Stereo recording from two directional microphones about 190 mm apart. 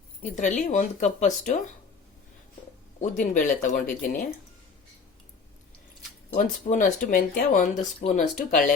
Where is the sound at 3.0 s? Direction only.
40° left (ahead or behind).